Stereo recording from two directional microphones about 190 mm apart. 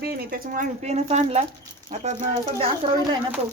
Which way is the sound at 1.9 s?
45° right (ahead or behind).